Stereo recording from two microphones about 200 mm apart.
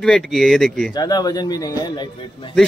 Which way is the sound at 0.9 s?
20° left (ahead or behind).